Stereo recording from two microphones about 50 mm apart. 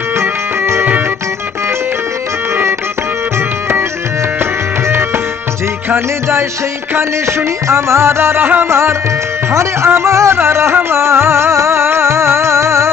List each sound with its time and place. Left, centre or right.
0.2 s music: right
4.4 s music: right
9.5 s speech: right
9.9 s music: right